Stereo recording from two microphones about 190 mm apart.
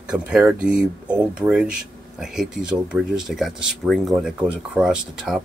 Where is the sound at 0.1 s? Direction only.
5° right (ahead or behind).